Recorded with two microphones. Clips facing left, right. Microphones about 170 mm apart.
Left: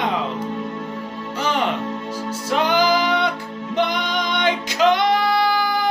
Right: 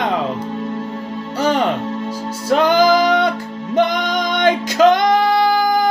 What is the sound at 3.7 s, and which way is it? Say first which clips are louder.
Female singing: right 5 dB; 45° right (ahead or behind).